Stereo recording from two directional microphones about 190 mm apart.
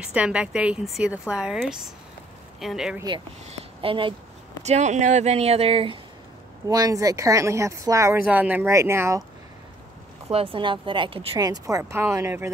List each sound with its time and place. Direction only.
0.0 s a woman's voice: 5° right (ahead or behind)
3.4 s a sound: 30° right (ahead or behind)
4.6 s speech: 35° right (ahead or behind)
6.7 s speech: 20° right (ahead or behind)
10.3 s speech: 30° right (ahead or behind)